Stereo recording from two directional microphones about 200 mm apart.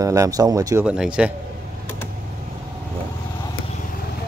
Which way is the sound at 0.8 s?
5° right (ahead or behind).